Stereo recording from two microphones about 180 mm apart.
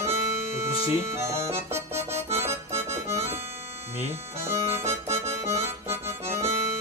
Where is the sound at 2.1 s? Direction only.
35° right (ahead or behind).